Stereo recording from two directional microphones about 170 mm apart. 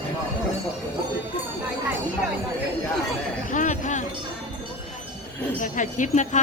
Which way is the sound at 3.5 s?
50° left (ahead or behind).